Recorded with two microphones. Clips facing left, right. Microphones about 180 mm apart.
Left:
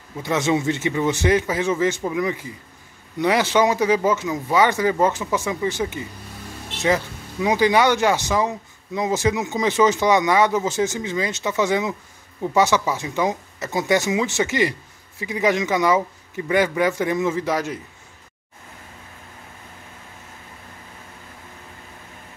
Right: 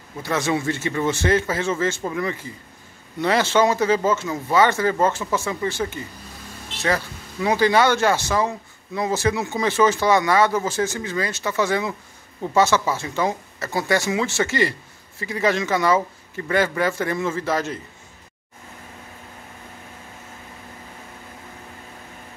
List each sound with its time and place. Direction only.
0.2 s speech: 20° left (ahead or behind)
7.4 s speech: 15° left (ahead or behind)